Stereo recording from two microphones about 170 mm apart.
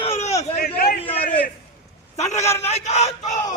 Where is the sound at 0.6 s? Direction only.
65° left (ahead or behind).